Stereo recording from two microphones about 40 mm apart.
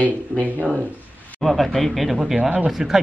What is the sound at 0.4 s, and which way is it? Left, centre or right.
Speech, right.